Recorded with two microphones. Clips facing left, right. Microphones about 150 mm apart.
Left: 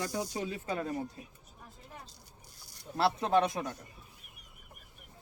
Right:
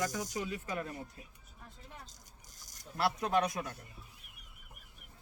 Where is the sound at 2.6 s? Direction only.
45° right (ahead or behind).